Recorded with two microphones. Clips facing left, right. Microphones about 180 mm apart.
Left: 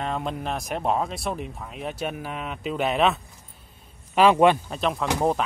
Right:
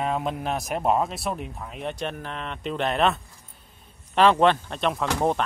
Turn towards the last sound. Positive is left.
turn(degrees=0)  # may be behind; listen again after turning